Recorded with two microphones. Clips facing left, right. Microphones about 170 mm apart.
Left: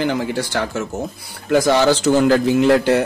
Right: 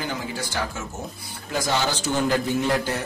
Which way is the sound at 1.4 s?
75° left (ahead or behind).